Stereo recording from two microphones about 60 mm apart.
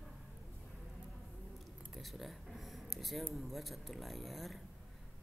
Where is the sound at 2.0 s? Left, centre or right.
Centre.